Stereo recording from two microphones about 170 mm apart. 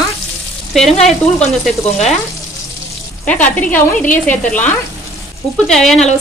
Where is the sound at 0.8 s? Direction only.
Centre (ahead or behind).